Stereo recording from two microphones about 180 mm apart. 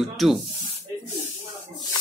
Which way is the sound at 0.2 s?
Centre (ahead or behind).